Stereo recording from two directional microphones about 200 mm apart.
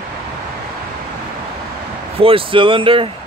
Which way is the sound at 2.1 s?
25° right (ahead or behind).